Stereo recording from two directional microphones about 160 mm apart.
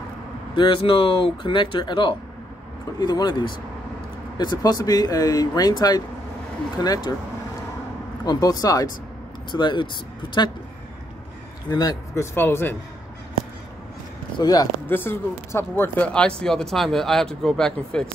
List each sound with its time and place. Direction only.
0.6 s speech: 35° left (ahead or behind)
8.3 s speech: 25° left (ahead or behind)
11.7 s speech: 25° left (ahead or behind)
12.4 s a man's voice: 15° left (ahead or behind)
14.4 s speech: 25° left (ahead or behind); by 18.1 s 5° left (ahead or behind)